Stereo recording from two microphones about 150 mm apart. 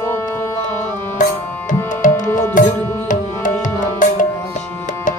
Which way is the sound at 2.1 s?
15° left (ahead or behind).